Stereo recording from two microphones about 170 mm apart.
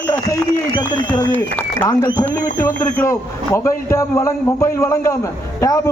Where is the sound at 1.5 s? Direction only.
15° left (ahead or behind).